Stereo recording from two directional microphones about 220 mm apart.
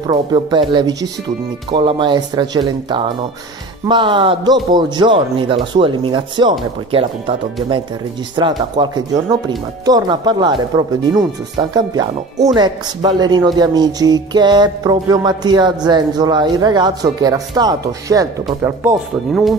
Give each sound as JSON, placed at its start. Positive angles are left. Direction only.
{"t": 0.0, "sound": "music", "side_deg": -20}
{"t": 8.4, "sound": "music", "side_deg": -20}
{"t": 9.8, "sound": "speech", "side_deg": -20}
{"t": 12.5, "sound": "music", "side_deg": -20}
{"t": 18.8, "sound": "speech", "side_deg": -5}